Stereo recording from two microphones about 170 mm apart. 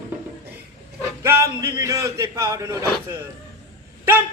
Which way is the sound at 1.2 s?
15° right (ahead or behind).